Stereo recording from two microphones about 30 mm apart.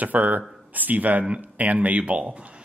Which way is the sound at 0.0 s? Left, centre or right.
Right.